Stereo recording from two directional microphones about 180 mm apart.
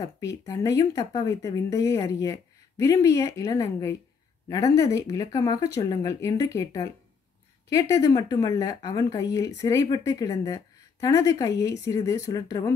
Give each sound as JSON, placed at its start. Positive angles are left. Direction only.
{"t": 0.0, "sound": "speech", "side_deg": 20}